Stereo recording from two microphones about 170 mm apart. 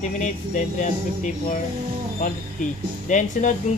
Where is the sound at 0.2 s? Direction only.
45° left (ahead or behind).